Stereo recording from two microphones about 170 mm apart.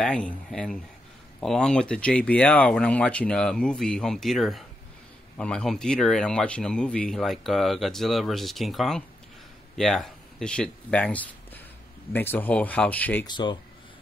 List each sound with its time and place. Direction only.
0.0 s speech: 5° left (ahead or behind)
13.3 s speech: 25° left (ahead or behind)